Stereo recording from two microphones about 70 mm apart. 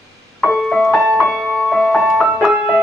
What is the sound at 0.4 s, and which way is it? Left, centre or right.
Music, centre.